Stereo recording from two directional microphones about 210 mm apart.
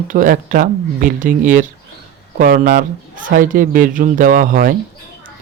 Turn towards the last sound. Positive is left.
turn(degrees=-40)  # may be behind; listen again after turning